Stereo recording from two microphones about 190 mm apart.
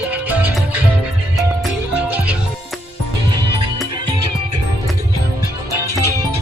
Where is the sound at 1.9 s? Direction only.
10° right (ahead or behind).